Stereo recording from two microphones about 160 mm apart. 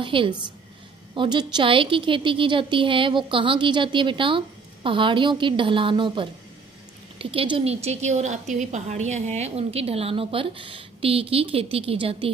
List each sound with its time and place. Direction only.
0.0 s a woman's voice: 30° right (ahead or behind)